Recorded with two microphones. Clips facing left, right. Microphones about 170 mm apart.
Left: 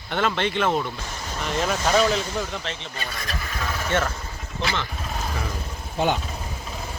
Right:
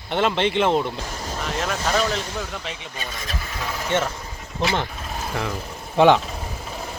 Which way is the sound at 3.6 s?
15° right (ahead or behind).